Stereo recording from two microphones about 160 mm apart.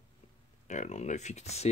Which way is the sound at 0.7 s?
45° left (ahead or behind).